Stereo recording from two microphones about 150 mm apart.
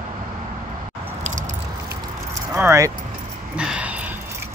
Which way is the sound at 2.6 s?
20° right (ahead or behind).